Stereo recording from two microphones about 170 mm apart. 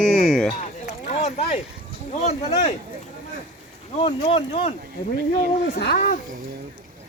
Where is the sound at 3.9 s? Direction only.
35° left (ahead or behind).